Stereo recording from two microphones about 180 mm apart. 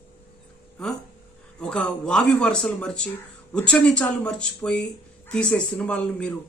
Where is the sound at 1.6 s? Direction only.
5° left (ahead or behind).